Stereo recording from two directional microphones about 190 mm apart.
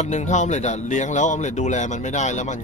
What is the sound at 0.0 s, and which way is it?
Speech, 40° left (ahead or behind).